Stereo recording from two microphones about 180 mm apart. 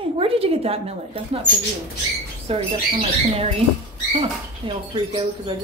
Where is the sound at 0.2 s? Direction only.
30° right (ahead or behind).